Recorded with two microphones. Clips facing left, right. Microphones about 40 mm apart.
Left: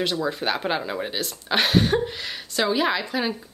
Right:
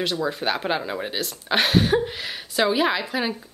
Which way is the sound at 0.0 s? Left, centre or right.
Centre.